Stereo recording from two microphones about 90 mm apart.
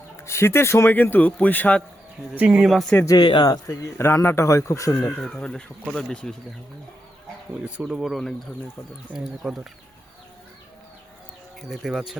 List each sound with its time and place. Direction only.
0.2 s a man's voice: 30° left (ahead or behind)
2.3 s speech: 20° right (ahead or behind)
2.6 s speech: 5° right (ahead or behind)
3.2 s speech: 55° left (ahead or behind)
3.7 s speech: 30° left (ahead or behind)
5.2 s speech: 10° left (ahead or behind)
7.6 s speech: 10° right (ahead or behind)
11.7 s speech: 5° right (ahead or behind)